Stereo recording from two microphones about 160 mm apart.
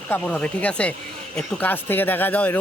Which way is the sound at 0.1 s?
10° left (ahead or behind).